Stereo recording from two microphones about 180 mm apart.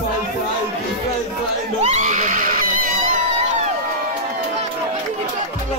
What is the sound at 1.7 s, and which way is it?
Screaming, 40° right (ahead or behind).